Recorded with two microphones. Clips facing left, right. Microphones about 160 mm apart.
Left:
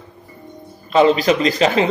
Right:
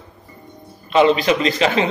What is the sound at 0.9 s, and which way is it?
Speech, 35° left (ahead or behind).